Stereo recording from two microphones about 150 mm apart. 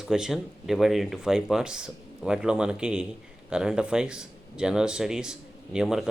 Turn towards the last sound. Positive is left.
turn(degrees=-5)  # may be behind; listen again after turning